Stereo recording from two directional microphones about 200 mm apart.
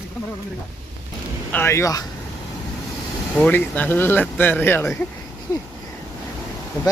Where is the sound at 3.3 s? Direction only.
10° left (ahead or behind).